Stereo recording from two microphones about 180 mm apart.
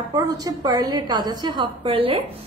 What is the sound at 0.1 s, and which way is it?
A woman's voice, 20° right (ahead or behind).